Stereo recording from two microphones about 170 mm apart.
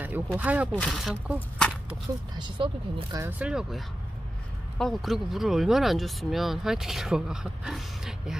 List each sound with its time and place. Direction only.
0.3 s speech: 10° right (ahead or behind)
0.7 s speech: 5° left (ahead or behind)
1.9 s speech: 30° right (ahead or behind)
3.3 s speech: 5° right (ahead or behind)